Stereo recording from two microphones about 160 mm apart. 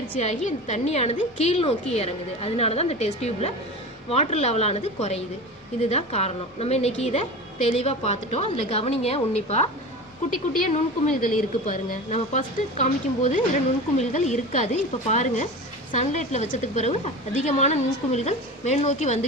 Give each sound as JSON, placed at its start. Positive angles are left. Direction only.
{"t": 0.2, "sound": "a woman's voice", "side_deg": 45}
{"t": 10.2, "sound": "a woman's voice", "side_deg": 50}
{"t": 13.9, "sound": "a woman's voice", "side_deg": 45}